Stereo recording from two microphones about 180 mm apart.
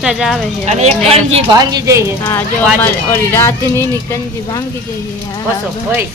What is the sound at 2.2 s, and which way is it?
Speech, 10° left (ahead or behind).